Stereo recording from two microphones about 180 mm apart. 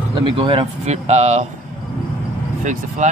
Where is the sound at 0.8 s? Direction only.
40° right (ahead or behind).